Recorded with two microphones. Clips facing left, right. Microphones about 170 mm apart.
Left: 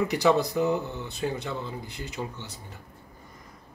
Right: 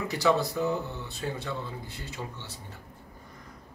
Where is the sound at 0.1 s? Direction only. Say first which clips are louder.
Left 3 dB; 20° left (ahead or behind).